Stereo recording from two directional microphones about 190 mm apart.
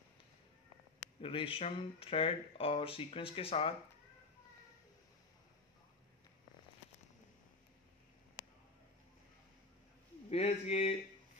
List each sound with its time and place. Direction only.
0.9 s speech: 30° left (ahead or behind)
10.3 s speech: 35° left (ahead or behind)